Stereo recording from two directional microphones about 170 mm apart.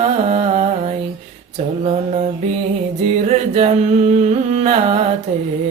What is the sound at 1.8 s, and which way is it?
Mantra, 40° right (ahead or behind).